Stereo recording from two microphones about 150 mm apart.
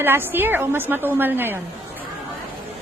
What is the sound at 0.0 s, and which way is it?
A woman's voice, 15° right (ahead or behind).